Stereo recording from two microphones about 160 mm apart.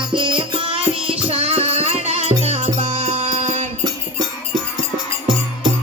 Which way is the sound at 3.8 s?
30° right (ahead or behind).